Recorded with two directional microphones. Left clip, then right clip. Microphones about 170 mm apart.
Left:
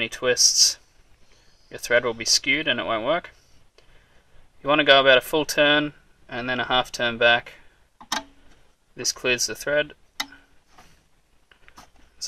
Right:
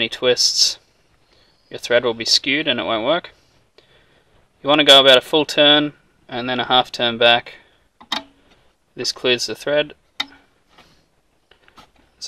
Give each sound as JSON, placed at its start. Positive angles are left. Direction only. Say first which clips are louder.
{"t": 0.0, "sound": "speech", "louder": "right 4 dB", "side_deg": -30}
{"t": 8.9, "sound": "speech", "louder": "right 5 dB", "side_deg": -30}